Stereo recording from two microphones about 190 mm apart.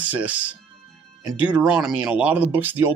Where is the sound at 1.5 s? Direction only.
5° right (ahead or behind).